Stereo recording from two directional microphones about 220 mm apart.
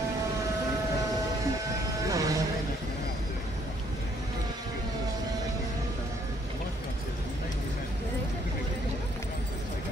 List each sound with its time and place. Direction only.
2.0 s vehicle: 15° right (ahead or behind)